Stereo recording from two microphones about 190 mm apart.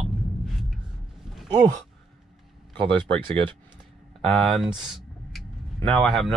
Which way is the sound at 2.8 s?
25° right (ahead or behind).